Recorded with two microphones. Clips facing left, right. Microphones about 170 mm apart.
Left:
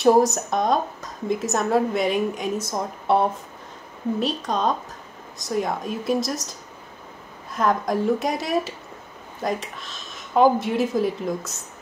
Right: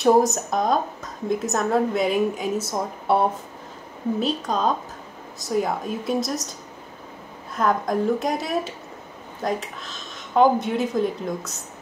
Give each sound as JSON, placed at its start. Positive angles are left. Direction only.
{"t": 0.0, "sound": "a woman's voice", "side_deg": 0}
{"t": 4.2, "sound": "a woman's voice", "side_deg": 0}
{"t": 7.5, "sound": "a woman's voice", "side_deg": 0}